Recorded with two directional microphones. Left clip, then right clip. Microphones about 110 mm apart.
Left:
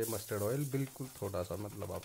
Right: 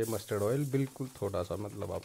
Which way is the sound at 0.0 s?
20° right (ahead or behind).